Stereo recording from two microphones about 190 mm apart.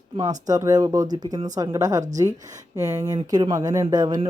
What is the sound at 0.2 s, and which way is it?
A woman's voice, 20° right (ahead or behind).